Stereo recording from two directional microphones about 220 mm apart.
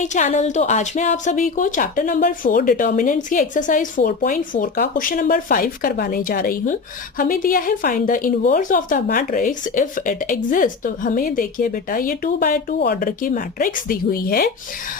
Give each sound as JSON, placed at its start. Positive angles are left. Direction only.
{"t": 0.0, "sound": "a woman's voice", "side_deg": 35}